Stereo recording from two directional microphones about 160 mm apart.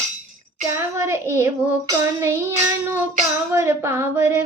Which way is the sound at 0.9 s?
15° right (ahead or behind).